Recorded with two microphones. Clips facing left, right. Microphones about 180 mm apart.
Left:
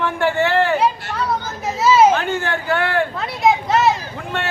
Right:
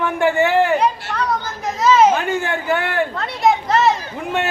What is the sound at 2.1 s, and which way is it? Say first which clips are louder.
Speech: even; 15° right (ahead or behind).